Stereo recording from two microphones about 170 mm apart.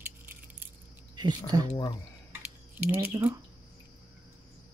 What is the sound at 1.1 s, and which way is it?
Speech, 25° right (ahead or behind).